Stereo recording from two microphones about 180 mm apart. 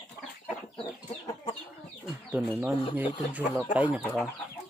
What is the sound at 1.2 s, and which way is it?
Chicken, 25° left (ahead or behind).